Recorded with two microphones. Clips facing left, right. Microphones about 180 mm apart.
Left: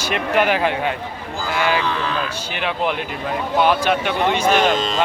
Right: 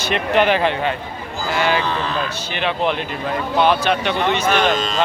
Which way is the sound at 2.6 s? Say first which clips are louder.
Right 2 dB; 10° left (ahead or behind).